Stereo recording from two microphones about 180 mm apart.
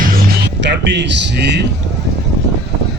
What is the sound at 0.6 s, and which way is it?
Speech, 70° right (ahead or behind).